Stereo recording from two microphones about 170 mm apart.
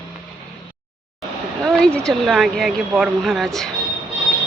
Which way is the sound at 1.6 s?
5° left (ahead or behind).